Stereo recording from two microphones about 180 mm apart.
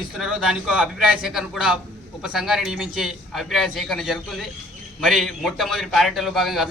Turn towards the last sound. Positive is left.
turn(degrees=0)  # may be behind; listen again after turning